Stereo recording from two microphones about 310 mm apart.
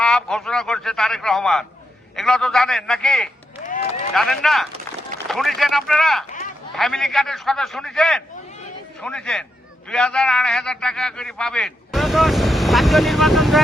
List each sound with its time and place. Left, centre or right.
0.0 s a man's voice: centre